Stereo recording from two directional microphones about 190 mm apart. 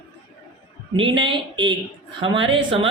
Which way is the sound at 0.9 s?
25° right (ahead or behind).